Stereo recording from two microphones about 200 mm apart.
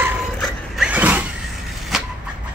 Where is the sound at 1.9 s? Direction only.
5° right (ahead or behind).